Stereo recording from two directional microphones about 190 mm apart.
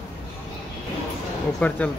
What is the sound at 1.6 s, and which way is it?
Speech, 5° left (ahead or behind).